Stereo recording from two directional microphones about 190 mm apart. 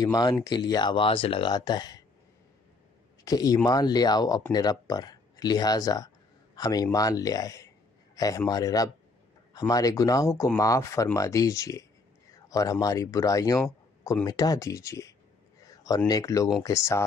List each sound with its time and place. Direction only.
0.0 s speech: 20° left (ahead or behind)
3.3 s speech: 20° left (ahead or behind)